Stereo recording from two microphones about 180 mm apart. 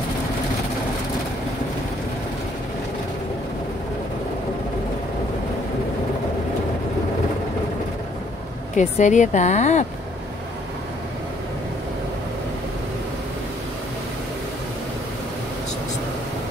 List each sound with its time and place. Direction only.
8.7 s speech: 45° left (ahead or behind)